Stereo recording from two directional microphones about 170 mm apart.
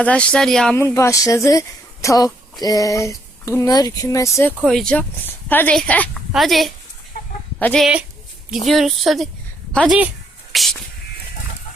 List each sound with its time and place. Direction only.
0.0 s speech: 5° left (ahead or behind)
0.8 s speech: 15° left (ahead or behind)
4.6 s speech: 5° left (ahead or behind)
10.5 s a sound: centre (ahead or behind)